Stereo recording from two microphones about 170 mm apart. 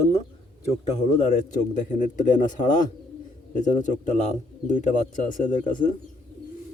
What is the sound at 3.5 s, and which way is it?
Speech, 45° left (ahead or behind).